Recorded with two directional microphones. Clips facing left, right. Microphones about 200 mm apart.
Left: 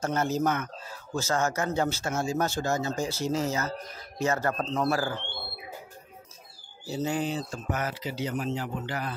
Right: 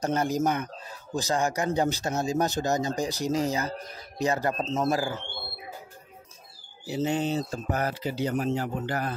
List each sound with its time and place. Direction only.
0.0 s a man's voice: 15° right (ahead or behind)
6.9 s a man's voice: 25° right (ahead or behind); by 9.1 s 45° right (ahead or behind)